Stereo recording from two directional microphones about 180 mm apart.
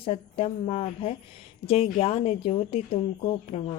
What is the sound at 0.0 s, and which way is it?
A woman's voice, 35° left (ahead or behind).